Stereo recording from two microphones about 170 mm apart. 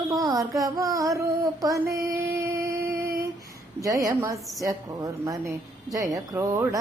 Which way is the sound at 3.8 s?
20° right (ahead or behind).